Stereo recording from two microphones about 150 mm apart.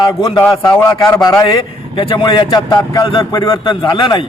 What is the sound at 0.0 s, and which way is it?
A man's voice, 30° left (ahead or behind).